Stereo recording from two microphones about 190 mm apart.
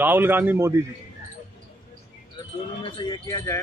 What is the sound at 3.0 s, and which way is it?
Speech, 20° left (ahead or behind).